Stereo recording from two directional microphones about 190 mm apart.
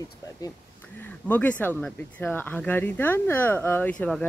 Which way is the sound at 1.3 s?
10° left (ahead or behind).